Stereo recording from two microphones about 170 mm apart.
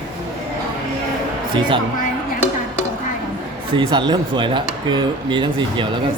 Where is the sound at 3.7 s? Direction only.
25° right (ahead or behind).